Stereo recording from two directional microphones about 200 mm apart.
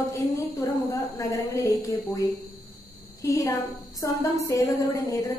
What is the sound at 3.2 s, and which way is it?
A woman's voice, 15° left (ahead or behind).